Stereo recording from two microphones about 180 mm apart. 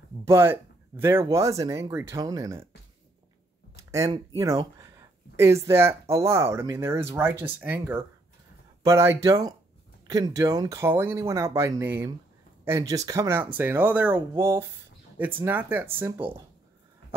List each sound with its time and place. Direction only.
0.2 s speech: 15° right (ahead or behind)
3.7 s a sound: 15° right (ahead or behind)
4.7 s speech: 15° right (ahead or behind)